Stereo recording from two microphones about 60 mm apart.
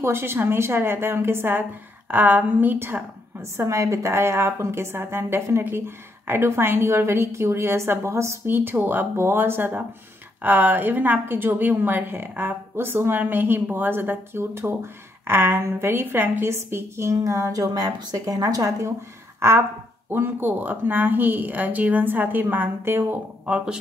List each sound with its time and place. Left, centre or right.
0.0 s speech: right
3.6 s a woman's voice: right
8.5 s speech: right
17.2 s speech: right
19.4 s a woman's voice: right
20.1 s speech: right
23.4 s speech: centre